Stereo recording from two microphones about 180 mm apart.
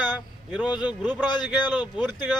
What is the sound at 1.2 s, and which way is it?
Speech, 25° left (ahead or behind).